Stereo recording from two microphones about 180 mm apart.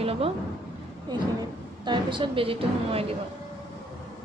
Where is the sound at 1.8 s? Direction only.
25° right (ahead or behind).